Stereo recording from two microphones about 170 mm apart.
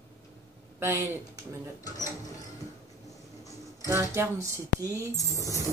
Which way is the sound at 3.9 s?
15° right (ahead or behind).